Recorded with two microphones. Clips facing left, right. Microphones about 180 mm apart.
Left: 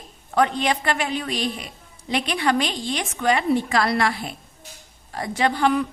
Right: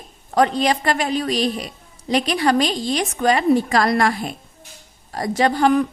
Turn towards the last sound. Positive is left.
turn(degrees=-45)  # may be behind; listen again after turning